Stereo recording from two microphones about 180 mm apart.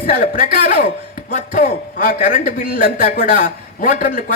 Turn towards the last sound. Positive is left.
turn(degrees=50)  # may be behind; listen again after turning